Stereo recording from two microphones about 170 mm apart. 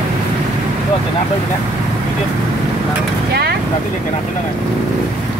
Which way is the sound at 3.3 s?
70° right (ahead or behind).